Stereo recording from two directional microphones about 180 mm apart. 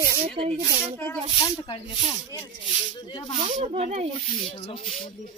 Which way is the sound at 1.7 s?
30° left (ahead or behind).